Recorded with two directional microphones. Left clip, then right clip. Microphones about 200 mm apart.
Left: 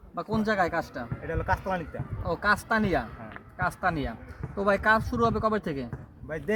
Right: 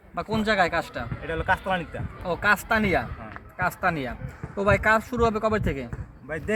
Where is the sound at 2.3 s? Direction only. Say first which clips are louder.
Right 3 dB; 10° right (ahead or behind).